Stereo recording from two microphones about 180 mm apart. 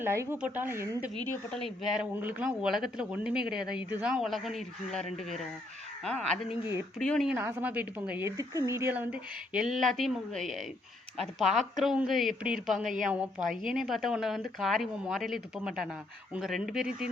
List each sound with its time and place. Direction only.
0.0 s speech: 15° right (ahead or behind)
1.3 s a woman's voice: centre (ahead or behind)
7.3 s a woman's voice: 10° right (ahead or behind)